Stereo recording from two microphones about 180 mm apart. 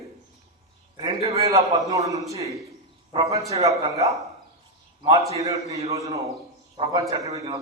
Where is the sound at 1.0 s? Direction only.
30° right (ahead or behind).